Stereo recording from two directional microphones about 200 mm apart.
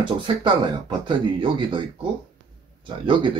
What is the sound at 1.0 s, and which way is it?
Speech, 25° right (ahead or behind).